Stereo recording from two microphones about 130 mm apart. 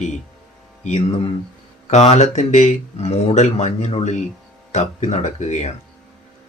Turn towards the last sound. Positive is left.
turn(degrees=60)  # may be behind; listen again after turning